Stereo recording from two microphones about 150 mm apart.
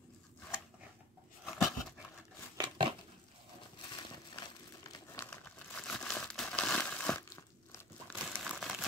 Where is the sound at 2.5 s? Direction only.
30° right (ahead or behind).